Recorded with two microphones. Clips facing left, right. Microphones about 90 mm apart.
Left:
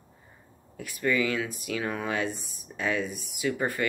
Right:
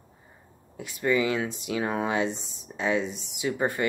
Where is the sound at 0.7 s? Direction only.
20° right (ahead or behind).